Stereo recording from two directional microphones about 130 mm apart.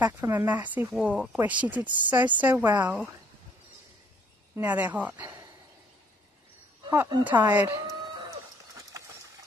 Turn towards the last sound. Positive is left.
turn(degrees=-15)  # may be behind; listen again after turning